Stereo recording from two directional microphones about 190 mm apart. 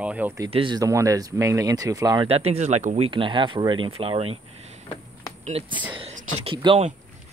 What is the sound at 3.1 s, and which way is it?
Speech, 25° right (ahead or behind).